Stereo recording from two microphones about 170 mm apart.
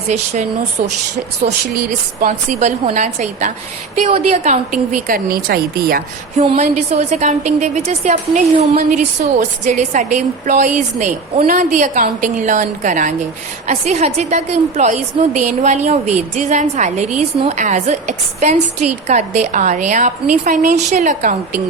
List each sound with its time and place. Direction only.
1.9 s a woman's voice: 45° right (ahead or behind); by 6.4 s 60° right (ahead or behind)
6.4 s a woman's voice: 35° right (ahead or behind)